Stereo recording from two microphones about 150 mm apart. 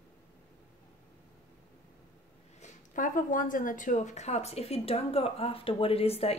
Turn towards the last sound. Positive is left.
turn(degrees=40)  # may be behind; listen again after turning